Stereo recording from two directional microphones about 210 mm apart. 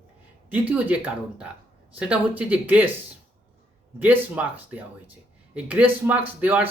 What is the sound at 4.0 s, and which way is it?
Speech, 10° right (ahead or behind).